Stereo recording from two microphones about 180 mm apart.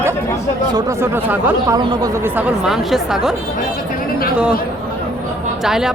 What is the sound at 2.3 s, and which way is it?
Speech, centre (ahead or behind).